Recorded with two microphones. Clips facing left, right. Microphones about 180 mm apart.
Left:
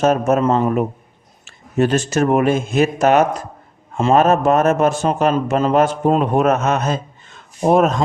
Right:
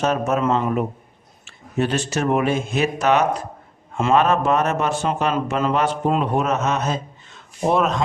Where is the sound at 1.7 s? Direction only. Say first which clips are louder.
Left 5 dB; 45° left (ahead or behind).